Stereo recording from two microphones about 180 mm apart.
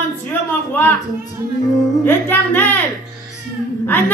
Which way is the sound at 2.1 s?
10° left (ahead or behind).